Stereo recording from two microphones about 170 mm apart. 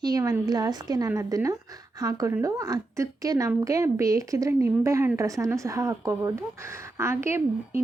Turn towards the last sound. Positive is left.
turn(degrees=-15)  # may be behind; listen again after turning